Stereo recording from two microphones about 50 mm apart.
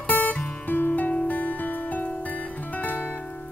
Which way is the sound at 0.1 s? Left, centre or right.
Left.